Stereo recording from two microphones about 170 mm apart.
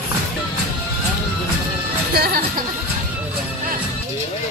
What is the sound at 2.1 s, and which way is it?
Music, 65° right (ahead or behind).